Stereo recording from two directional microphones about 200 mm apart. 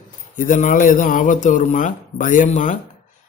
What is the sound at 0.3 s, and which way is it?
A man's voice, 40° left (ahead or behind).